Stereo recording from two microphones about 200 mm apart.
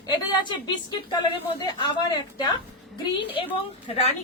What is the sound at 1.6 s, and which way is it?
Speech, 25° left (ahead or behind).